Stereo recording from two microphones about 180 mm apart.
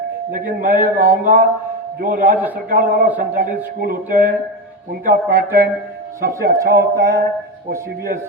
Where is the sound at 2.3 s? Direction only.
10° right (ahead or behind).